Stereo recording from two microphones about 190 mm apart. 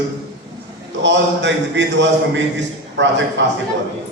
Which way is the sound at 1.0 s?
70° right (ahead or behind).